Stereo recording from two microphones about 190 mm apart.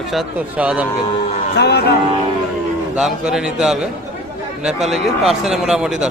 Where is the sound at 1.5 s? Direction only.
60° left (ahead or behind).